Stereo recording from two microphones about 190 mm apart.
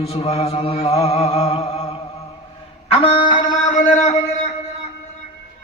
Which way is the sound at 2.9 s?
30° left (ahead or behind).